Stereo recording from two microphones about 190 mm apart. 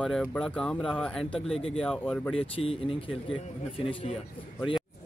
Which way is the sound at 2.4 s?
30° left (ahead or behind).